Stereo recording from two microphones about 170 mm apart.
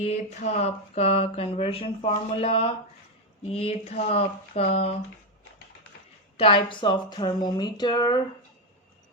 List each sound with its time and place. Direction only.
0.0 s speech: 40° left (ahead or behind)
6.3 s speech: 35° left (ahead or behind)